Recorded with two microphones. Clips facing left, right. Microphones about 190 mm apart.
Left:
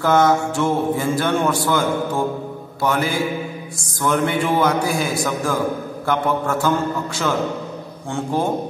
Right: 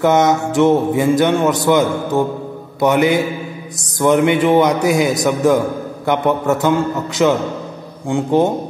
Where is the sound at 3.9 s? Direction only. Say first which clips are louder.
Right 7 dB; 20° right (ahead or behind).